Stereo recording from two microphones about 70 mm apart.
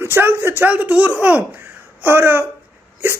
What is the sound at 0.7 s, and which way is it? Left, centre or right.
Speech, centre.